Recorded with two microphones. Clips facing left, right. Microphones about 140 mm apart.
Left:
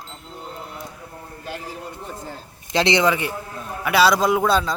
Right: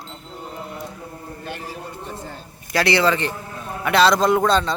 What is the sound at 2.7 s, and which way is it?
A man's voice, 20° left (ahead or behind).